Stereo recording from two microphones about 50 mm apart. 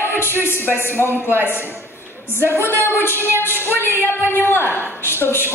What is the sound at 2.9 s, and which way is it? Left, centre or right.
Music, left.